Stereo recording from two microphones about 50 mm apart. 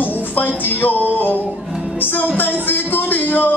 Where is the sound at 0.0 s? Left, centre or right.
Left.